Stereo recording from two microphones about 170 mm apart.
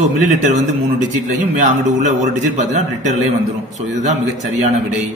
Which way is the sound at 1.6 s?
50° right (ahead or behind).